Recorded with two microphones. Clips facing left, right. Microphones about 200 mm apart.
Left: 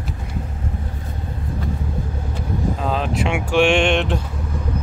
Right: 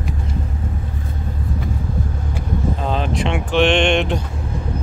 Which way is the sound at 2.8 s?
Centre (ahead or behind).